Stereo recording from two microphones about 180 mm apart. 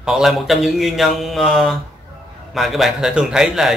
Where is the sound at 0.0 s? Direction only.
5° right (ahead or behind).